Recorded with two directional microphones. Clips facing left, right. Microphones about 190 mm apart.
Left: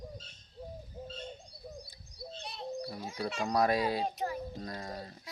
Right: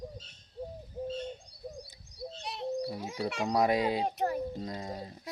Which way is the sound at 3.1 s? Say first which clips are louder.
Right 1 dB; 15° right (ahead or behind).